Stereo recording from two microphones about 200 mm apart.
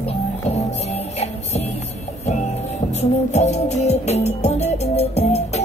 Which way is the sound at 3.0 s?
35° left (ahead or behind).